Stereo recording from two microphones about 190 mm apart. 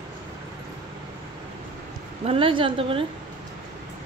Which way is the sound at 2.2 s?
30° right (ahead or behind).